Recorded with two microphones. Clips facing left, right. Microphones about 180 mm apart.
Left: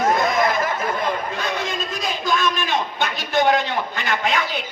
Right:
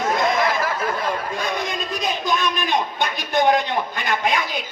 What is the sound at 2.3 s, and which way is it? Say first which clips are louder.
A man's voice: left 2 dB; 15° right (ahead or behind).